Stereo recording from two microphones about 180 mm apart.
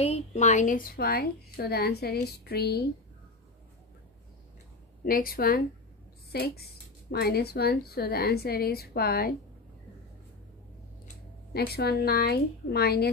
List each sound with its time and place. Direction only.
0.0 s a woman's voice: 35° left (ahead or behind); by 2.9 s 60° left (ahead or behind)
5.0 s a woman's voice: 55° left (ahead or behind)
11.5 s a woman's voice: 60° left (ahead or behind)